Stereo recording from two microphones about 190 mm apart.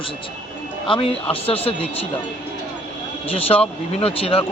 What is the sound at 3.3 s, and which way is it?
Speech, 30° left (ahead or behind).